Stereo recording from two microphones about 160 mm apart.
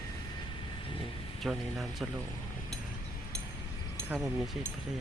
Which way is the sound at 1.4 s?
Centre (ahead or behind).